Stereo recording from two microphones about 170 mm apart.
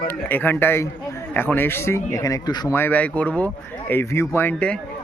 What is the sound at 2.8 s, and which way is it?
Speech, 10° left (ahead or behind).